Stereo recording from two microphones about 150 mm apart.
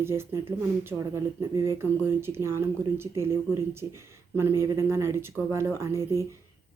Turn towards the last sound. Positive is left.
turn(degrees=-20)  # may be behind; listen again after turning